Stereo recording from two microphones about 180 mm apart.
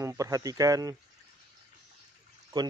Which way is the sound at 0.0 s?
15° right (ahead or behind).